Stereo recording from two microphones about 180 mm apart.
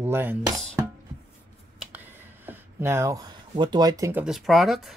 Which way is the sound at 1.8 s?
10° right (ahead or behind).